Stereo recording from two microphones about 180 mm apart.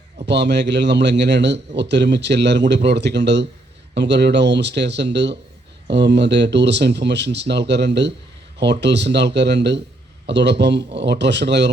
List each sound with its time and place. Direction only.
0.3 s a man's voice: 75° right (ahead or behind)